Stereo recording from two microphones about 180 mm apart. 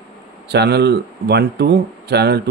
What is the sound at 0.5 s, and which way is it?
Speech, 65° right (ahead or behind).